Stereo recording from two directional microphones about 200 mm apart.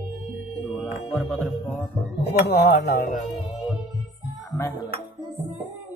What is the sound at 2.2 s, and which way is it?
Speech, 55° left (ahead or behind).